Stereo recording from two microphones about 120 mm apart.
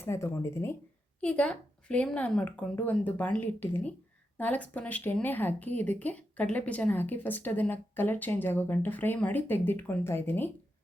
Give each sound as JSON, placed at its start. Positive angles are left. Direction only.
{"t": 0.0, "sound": "speech", "side_deg": 20}
{"t": 1.2, "sound": "speech", "side_deg": 10}